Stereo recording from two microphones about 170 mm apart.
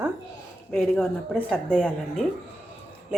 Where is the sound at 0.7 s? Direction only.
Centre (ahead or behind).